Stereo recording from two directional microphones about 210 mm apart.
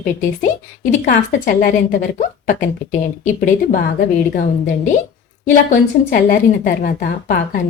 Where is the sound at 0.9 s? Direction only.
35° left (ahead or behind).